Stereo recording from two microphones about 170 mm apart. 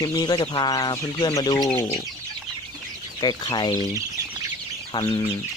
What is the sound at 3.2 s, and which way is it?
Speech, 25° left (ahead or behind).